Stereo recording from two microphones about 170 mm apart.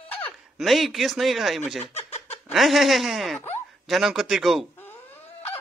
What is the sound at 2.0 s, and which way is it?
Snicker, 40° left (ahead or behind).